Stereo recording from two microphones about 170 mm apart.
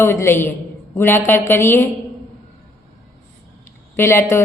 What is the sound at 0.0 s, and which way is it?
A woman's voice, 15° left (ahead or behind).